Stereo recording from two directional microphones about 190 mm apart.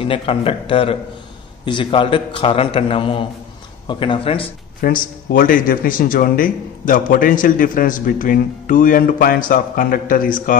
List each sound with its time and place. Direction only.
0.0 s a man's voice: 30° left (ahead or behind)
4.8 s speech: 50° left (ahead or behind)